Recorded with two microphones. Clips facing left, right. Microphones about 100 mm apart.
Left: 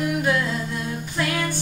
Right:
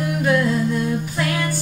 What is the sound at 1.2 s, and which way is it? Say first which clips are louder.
Music: left 2 dB; 5° right (ahead or behind).